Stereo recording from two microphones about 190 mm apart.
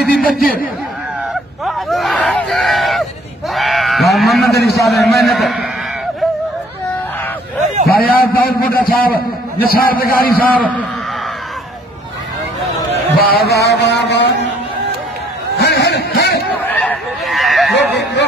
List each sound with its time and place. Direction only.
0.2 s a man's voice: 50° left (ahead or behind)
1.6 s speech: centre (ahead or behind)
3.5 s sheep: centre (ahead or behind)
4.6 s a man's voice: centre (ahead or behind)
7.8 s a man's voice: 50° left (ahead or behind)
10.3 s a man's voice: 10° left (ahead or behind)
13.2 s music: 55° left (ahead or behind)
15.6 s a sound: 60° left (ahead or behind)
16.5 s a sound: 10° left (ahead or behind)
17.7 s a sound: 65° left (ahead or behind)